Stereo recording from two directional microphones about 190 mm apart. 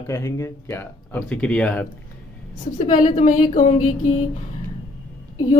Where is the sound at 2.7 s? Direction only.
40° left (ahead or behind).